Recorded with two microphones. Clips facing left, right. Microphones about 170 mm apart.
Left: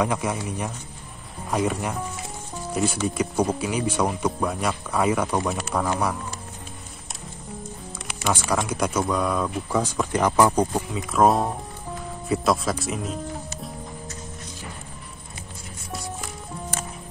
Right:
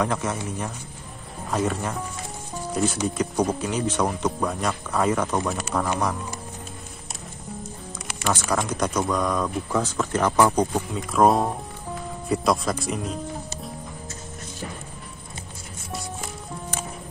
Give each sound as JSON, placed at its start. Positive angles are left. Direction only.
{"t": 0.0, "sound": "speech", "side_deg": 10}
{"t": 8.1, "sound": "speech", "side_deg": 10}